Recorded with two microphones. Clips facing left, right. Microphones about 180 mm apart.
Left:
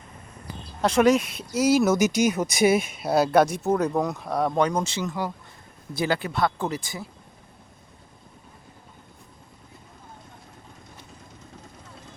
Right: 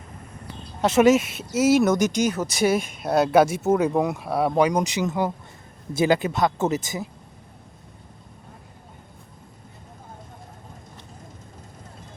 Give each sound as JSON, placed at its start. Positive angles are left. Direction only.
{"t": 0.8, "sound": "speech", "side_deg": -5}